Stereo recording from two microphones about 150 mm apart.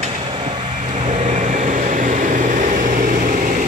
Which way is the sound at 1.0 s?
55° right (ahead or behind).